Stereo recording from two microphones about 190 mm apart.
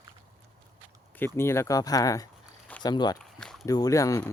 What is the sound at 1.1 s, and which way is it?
Speech, 10° left (ahead or behind).